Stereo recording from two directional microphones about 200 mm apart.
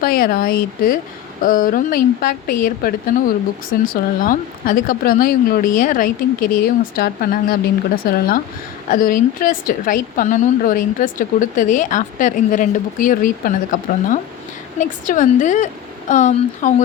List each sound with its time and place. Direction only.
0.0 s a woman's voice: 45° left (ahead or behind)